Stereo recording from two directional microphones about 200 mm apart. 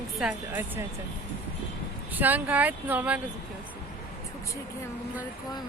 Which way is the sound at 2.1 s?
10° right (ahead or behind).